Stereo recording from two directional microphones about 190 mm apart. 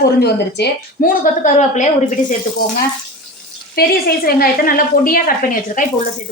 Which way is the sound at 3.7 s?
55° left (ahead or behind).